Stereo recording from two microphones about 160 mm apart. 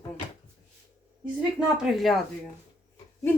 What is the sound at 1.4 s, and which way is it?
Speech, 5° right (ahead or behind).